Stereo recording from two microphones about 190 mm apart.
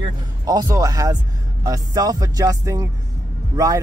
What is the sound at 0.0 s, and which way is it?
Speech, 20° right (ahead or behind).